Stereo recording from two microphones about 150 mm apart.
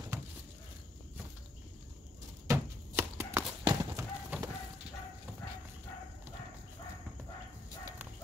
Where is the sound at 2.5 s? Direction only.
15° right (ahead or behind).